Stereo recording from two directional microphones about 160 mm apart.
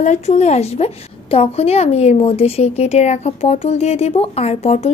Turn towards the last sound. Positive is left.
turn(degrees=40)  # may be behind; listen again after turning